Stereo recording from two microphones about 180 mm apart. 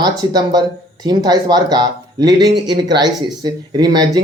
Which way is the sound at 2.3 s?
70° right (ahead or behind).